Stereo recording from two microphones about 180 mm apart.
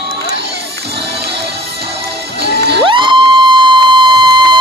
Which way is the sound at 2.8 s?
25° right (ahead or behind).